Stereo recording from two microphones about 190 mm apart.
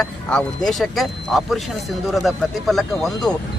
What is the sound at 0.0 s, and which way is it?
Speech, 5° left (ahead or behind).